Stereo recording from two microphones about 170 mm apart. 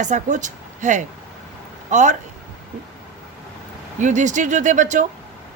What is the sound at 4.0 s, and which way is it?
Speech, 45° right (ahead or behind).